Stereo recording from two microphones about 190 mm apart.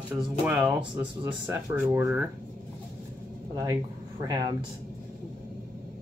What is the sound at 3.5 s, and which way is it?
Speech, 20° right (ahead or behind).